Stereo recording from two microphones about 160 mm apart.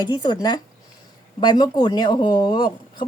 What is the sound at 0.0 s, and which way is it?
A woman's voice, 25° left (ahead or behind).